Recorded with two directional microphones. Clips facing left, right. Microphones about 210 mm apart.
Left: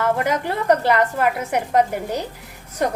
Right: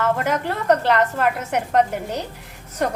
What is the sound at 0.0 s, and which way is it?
A woman's voice, 10° left (ahead or behind).